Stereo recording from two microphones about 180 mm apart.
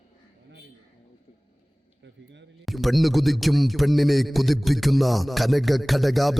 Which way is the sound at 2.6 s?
Centre (ahead or behind).